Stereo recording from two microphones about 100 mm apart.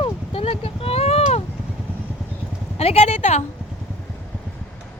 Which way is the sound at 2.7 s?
90° left.